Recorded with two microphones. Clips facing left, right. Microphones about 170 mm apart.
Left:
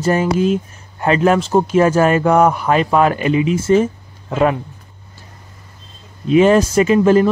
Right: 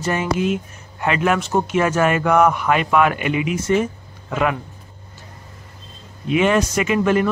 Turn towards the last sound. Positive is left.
turn(degrees=30)  # may be behind; listen again after turning